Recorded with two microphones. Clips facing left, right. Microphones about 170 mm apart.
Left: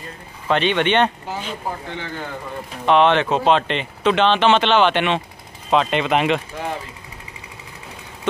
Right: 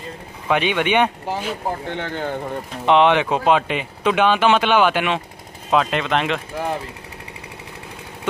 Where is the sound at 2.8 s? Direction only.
15° right (ahead or behind); by 6.4 s 5° left (ahead or behind).